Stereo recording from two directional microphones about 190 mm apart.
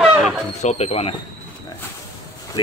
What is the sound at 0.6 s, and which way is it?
Speech, 35° left (ahead or behind).